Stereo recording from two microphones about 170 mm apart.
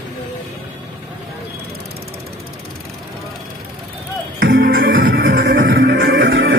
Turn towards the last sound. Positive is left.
turn(degrees=-90)